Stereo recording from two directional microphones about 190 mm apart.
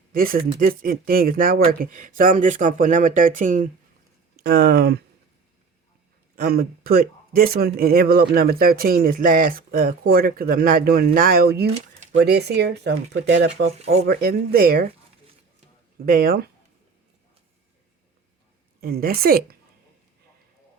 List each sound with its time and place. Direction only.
0.1 s speech: 50° right (ahead or behind)
4.4 s speech: 60° right (ahead or behind)
6.3 s speech: 50° right (ahead or behind)
13.7 s speech: 35° right (ahead or behind)
14.0 s speech: 55° right (ahead or behind)
16.0 s speech: 50° right (ahead or behind)
18.8 s speech: 50° right (ahead or behind)